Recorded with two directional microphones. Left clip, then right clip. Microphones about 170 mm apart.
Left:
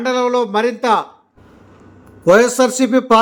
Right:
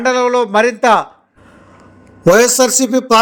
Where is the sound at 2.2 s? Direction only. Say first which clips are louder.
Right 2 dB; 35° right (ahead or behind).